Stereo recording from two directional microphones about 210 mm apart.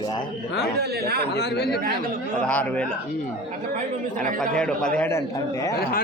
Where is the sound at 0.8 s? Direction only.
50° right (ahead or behind).